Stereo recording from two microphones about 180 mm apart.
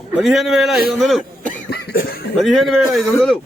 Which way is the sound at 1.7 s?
60° left (ahead or behind).